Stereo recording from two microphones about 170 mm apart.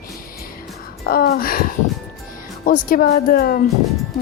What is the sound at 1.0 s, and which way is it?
A woman's voice, 60° left (ahead or behind).